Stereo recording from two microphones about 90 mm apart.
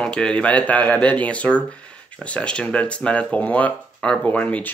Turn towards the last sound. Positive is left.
turn(degrees=15)  # may be behind; listen again after turning